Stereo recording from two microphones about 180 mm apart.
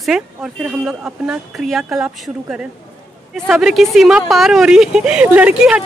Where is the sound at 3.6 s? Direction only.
Centre (ahead or behind).